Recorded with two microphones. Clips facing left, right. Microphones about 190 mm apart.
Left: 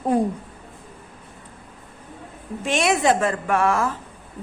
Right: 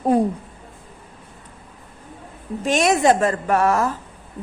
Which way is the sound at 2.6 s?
40° right (ahead or behind).